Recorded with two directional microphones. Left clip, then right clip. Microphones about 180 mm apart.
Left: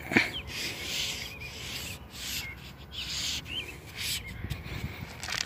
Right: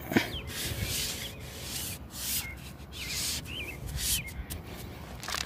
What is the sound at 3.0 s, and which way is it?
Rub, 25° right (ahead or behind).